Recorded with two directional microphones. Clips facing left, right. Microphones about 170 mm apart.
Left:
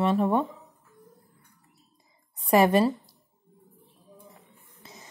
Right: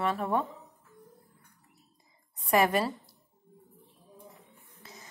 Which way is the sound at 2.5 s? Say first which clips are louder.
Left 5 dB; 25° left (ahead or behind).